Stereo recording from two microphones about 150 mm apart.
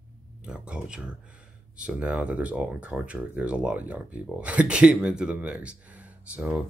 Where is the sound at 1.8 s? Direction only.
5° right (ahead or behind).